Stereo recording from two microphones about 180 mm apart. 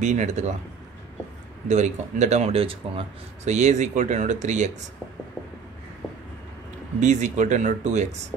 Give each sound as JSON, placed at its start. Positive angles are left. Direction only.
{"t": 0.0, "sound": "speech", "side_deg": -40}
{"t": 1.7, "sound": "speech", "side_deg": -40}
{"t": 7.0, "sound": "speech", "side_deg": -40}